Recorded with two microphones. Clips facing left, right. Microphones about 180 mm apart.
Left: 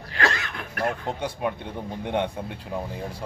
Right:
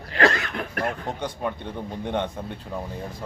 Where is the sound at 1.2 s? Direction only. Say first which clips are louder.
Left 1 dB; 10° left (ahead or behind).